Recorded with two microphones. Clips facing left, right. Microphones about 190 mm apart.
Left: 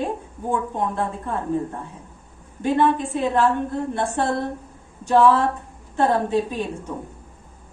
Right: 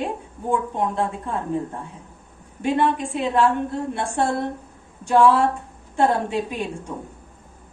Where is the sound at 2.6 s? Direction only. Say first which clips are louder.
Left 1 dB; 15° right (ahead or behind).